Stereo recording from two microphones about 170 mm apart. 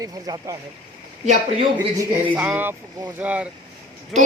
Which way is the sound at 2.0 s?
10° right (ahead or behind).